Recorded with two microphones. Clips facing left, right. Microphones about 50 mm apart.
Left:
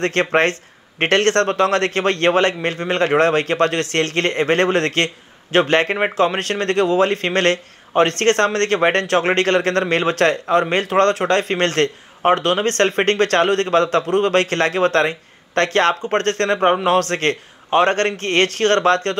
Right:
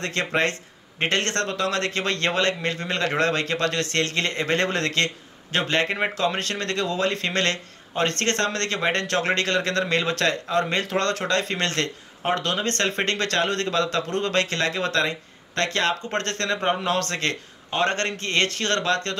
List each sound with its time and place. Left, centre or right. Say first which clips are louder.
0.0 s a man's voice: left 7 dB; left